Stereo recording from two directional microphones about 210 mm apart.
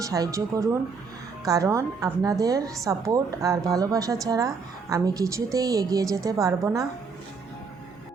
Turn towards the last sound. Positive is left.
turn(degrees=-15)  # may be behind; listen again after turning